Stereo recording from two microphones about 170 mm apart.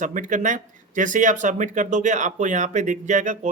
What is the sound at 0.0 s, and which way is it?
Speech, 50° right (ahead or behind).